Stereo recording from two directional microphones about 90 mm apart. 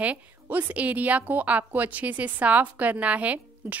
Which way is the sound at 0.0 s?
20° right (ahead or behind).